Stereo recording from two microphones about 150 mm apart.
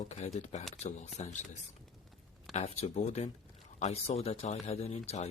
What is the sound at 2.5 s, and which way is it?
Speech, 45° left (ahead or behind).